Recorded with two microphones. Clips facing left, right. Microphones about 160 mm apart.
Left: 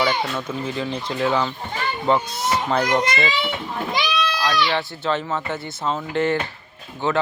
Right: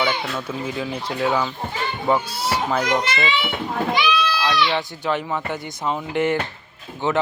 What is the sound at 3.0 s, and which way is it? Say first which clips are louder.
Speech: left 1 dB; 30° right (ahead or behind).